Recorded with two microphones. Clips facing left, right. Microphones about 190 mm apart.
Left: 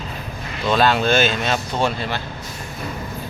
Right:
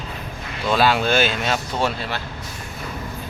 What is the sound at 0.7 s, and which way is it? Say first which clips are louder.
Speech: left 1 dB; 10° right (ahead or behind).